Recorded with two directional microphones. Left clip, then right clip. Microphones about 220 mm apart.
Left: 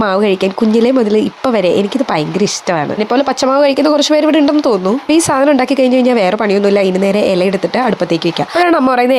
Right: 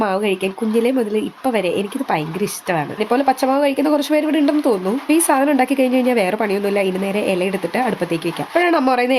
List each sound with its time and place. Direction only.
0.0 s speech: 20° left (ahead or behind)